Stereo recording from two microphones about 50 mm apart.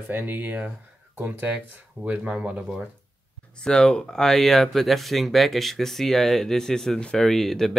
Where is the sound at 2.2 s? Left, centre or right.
Centre.